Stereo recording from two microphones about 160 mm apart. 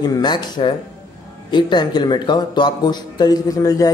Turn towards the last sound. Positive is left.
turn(degrees=20)  # may be behind; listen again after turning